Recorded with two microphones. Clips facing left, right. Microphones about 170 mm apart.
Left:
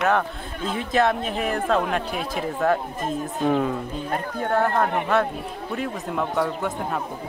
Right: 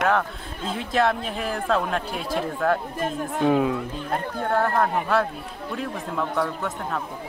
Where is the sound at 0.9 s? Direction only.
5° left (ahead or behind).